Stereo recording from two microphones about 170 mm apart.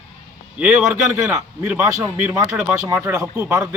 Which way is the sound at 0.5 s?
10° right (ahead or behind).